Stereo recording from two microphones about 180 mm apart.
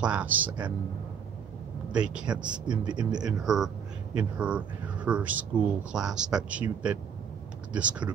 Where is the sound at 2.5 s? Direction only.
25° right (ahead or behind).